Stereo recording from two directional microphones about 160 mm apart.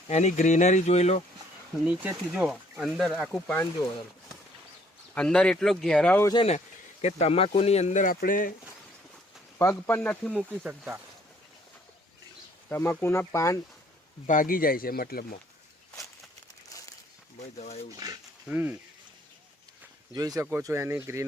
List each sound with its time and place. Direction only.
0.1 s speech: 45° left (ahead or behind)
1.8 s speech: 10° right (ahead or behind)
5.1 s speech: 5° left (ahead or behind)
7.0 s speech: 40° left (ahead or behind); by 8.5 s 60° left (ahead or behind)
9.6 s speech: 15° left (ahead or behind)
10.3 s speech: 10° right (ahead or behind)
12.6 s speech: 15° left (ahead or behind)
14.3 s speech: 60° left (ahead or behind)
18.0 s speech: 25° right (ahead or behind)
18.4 s speech: 10° right (ahead or behind)
20.1 s speech: 25° right (ahead or behind)